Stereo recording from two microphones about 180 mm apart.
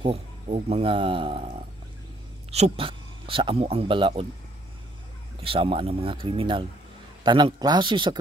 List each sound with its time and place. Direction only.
0.0 s speech: 35° right (ahead or behind)
2.5 s speech: 35° right (ahead or behind)
5.4 s speech: 30° right (ahead or behind)